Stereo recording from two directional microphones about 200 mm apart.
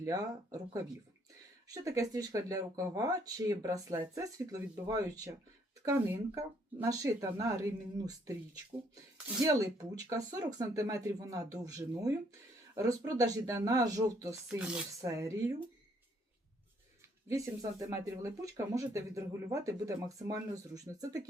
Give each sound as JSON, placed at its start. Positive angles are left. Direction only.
{"t": 0.0, "sound": "speech", "side_deg": -15}
{"t": 9.4, "sound": "speech", "side_deg": -15}
{"t": 17.2, "sound": "speech", "side_deg": -15}